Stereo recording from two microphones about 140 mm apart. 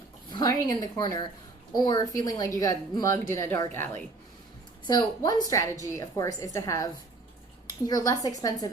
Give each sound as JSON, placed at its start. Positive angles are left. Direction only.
{"t": 0.3, "sound": "a woman's voice", "side_deg": 30}
{"t": 4.9, "sound": "a woman's voice", "side_deg": 30}